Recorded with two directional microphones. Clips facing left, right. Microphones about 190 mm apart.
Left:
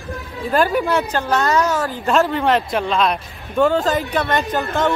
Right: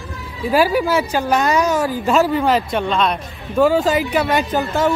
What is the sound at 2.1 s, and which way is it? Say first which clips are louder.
A man's voice: even; 5° right (ahead or behind).